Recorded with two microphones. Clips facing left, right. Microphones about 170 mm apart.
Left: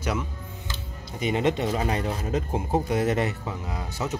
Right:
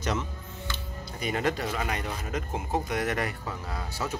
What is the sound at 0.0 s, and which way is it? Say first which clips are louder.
Speech: left 2 dB; 10° left (ahead or behind).